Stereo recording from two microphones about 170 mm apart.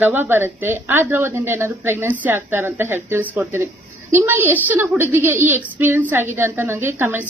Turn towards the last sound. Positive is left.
turn(degrees=-15)  # may be behind; listen again after turning